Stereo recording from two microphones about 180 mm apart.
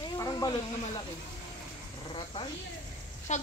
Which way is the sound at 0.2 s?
20° left (ahead or behind).